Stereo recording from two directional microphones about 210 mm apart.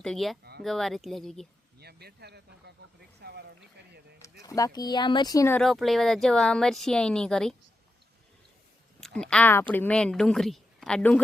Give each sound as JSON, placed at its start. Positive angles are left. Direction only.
{"t": 0.0, "sound": "speech", "side_deg": 0}
{"t": 1.8, "sound": "speech", "side_deg": -50}
{"t": 3.2, "sound": "a sound", "side_deg": -50}
{"t": 4.2, "sound": "speech", "side_deg": 15}
{"t": 9.0, "sound": "speech", "side_deg": 5}